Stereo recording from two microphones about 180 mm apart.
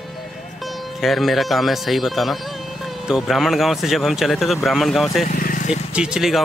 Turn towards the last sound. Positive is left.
turn(degrees=0)  # may be behind; listen again after turning